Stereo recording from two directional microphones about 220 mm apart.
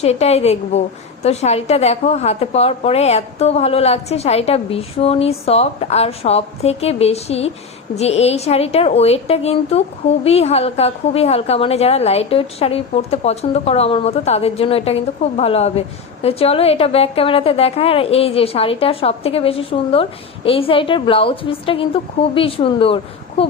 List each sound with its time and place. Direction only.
0.0 s a woman's voice: 30° left (ahead or behind)